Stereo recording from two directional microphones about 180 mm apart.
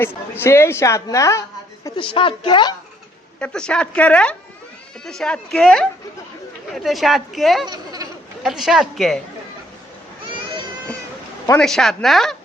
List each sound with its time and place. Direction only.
0.0 s a woman's voice: 15° left (ahead or behind)
2.0 s a woman's voice: 30° left (ahead or behind)
3.4 s speech: 5° left (ahead or behind)
11.6 s speech: centre (ahead or behind)